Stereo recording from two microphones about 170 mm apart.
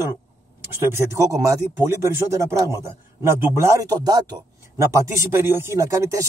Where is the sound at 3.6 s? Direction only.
20° right (ahead or behind).